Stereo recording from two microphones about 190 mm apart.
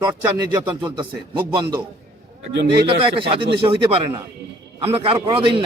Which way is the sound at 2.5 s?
60° right (ahead or behind).